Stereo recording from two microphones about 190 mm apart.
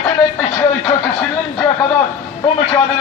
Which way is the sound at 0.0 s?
20° left (ahead or behind).